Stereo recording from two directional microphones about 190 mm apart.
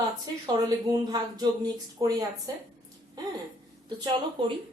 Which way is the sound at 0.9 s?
20° right (ahead or behind).